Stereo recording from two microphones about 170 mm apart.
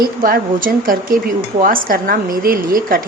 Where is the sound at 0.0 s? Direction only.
55° right (ahead or behind).